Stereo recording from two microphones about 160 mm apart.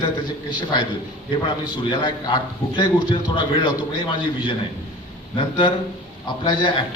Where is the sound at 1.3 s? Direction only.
30° left (ahead or behind).